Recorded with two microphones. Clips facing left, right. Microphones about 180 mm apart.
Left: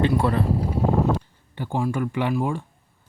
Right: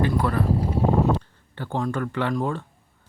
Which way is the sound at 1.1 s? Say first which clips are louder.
Even; 15° left (ahead or behind).